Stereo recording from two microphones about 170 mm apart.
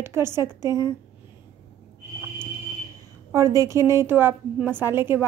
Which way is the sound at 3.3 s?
20° right (ahead or behind).